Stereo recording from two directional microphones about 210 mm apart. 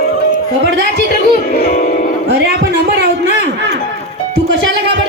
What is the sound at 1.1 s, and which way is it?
Music, 45° left (ahead or behind).